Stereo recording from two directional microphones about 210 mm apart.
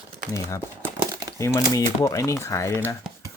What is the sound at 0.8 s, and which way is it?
Crumpling, 15° right (ahead or behind).